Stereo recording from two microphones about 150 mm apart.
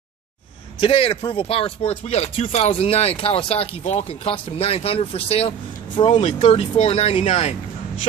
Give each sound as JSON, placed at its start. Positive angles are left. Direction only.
{"t": 0.7, "sound": "speech", "side_deg": 35}